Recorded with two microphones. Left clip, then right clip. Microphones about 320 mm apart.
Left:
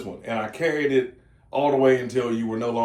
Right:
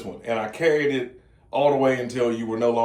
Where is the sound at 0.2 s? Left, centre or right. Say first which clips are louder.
Right 2 dB; centre.